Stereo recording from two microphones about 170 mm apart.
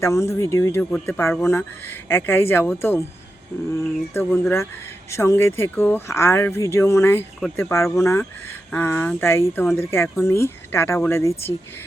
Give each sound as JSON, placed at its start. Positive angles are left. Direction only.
{"t": 0.0, "sound": "speech", "side_deg": 15}
{"t": 4.1, "sound": "speech", "side_deg": 10}